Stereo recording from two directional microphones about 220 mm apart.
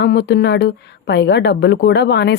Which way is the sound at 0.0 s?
50° left (ahead or behind).